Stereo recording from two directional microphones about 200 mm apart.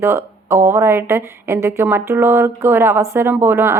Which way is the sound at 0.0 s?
10° right (ahead or behind).